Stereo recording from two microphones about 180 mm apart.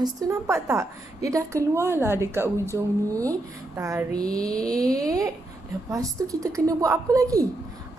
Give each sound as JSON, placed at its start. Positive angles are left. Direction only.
{"t": 0.0, "sound": "a woman's voice", "side_deg": -15}